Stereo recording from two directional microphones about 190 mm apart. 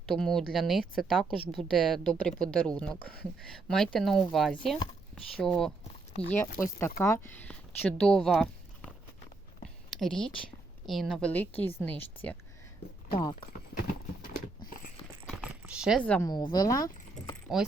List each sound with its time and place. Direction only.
0.0 s speech: centre (ahead or behind)
6.6 s speech: 15° left (ahead or behind)
10.0 s speech: 5° left (ahead or behind)
13.1 s speech: 25° left (ahead or behind)
13.7 s clip-clop: 50° left (ahead or behind)
15.3 s a sound: 5° right (ahead or behind)
16.2 s speech: 20° left (ahead or behind)